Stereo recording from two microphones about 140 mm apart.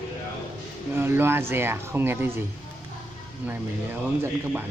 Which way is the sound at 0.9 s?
15° right (ahead or behind).